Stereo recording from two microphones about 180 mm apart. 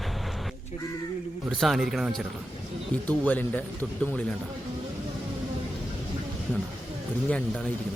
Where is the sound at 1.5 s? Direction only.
Centre (ahead or behind).